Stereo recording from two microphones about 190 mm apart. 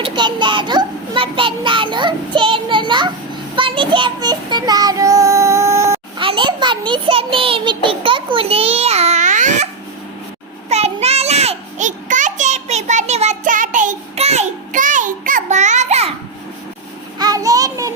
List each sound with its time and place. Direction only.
0.0 s a child's voice: 25° right (ahead or behind)
3.5 s child singing: 25° right (ahead or behind)
6.1 s a child's voice: 25° right (ahead or behind)
10.7 s a sound: 35° right (ahead or behind)
17.2 s child singing: 20° right (ahead or behind)